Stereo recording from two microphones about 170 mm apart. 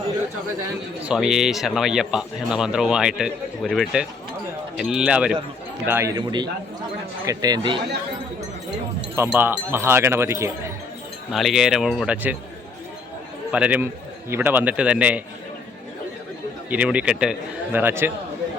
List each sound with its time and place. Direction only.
1.0 s speech: 5° right (ahead or behind); by 7.8 s 25° right (ahead or behind)
9.1 s a man's voice: 10° right (ahead or behind)
11.3 s speech: centre (ahead or behind)
13.5 s a man's voice: 10° right (ahead or behind)
16.6 s a man's voice: 10° right (ahead or behind)